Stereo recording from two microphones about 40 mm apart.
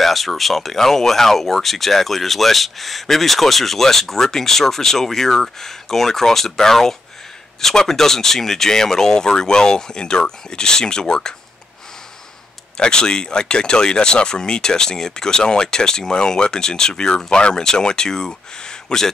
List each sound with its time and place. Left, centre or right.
0.0 s speech: centre
12.7 s speech: centre